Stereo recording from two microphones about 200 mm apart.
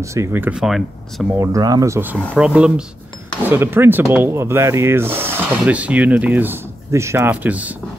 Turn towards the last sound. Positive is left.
turn(degrees=-5)  # may be behind; listen again after turning